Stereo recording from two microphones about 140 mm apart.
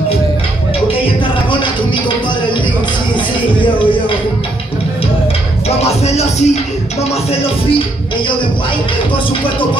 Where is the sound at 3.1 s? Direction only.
35° left (ahead or behind).